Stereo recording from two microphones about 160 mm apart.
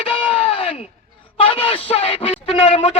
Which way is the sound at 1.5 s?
35° left (ahead or behind).